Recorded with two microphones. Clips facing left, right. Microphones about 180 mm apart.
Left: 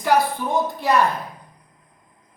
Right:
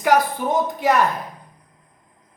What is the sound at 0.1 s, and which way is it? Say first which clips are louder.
Speech: right 1 dB; 20° right (ahead or behind).